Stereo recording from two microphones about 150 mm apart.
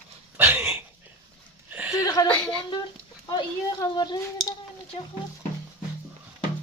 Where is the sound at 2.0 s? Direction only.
25° left (ahead or behind).